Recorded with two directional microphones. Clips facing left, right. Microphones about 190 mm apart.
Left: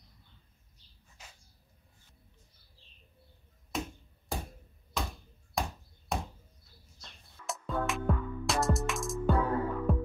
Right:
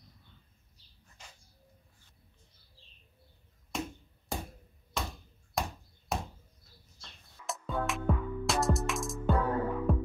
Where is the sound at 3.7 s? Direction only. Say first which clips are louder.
Even; centre (ahead or behind).